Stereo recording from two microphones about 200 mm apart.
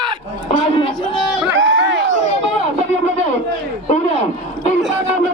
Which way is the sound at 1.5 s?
70° right (ahead or behind).